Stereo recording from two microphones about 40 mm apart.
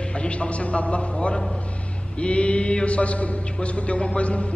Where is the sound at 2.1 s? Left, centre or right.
Left.